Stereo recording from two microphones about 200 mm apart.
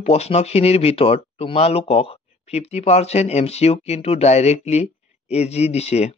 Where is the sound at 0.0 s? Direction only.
30° left (ahead or behind).